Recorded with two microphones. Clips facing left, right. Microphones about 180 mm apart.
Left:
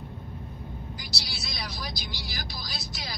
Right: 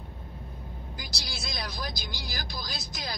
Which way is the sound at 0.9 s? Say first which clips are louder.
Left 1 dB; 50° right (ahead or behind).